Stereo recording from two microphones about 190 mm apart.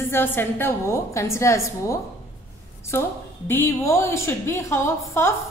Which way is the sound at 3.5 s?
15° left (ahead or behind).